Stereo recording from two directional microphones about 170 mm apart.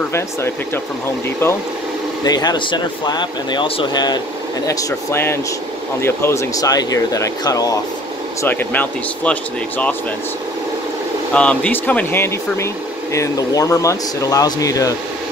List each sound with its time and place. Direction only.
2.2 s speech: 25° left (ahead or behind); by 9.9 s 10° left (ahead or behind)
11.3 s speech: 5° left (ahead or behind)